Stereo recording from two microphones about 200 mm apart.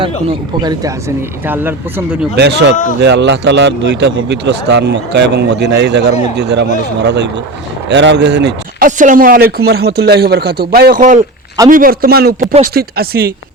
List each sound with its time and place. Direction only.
0.0 s speech: 25° right (ahead or behind)
2.3 s speech: 55° right (ahead or behind)
9.0 s a man's voice: 40° right (ahead or behind)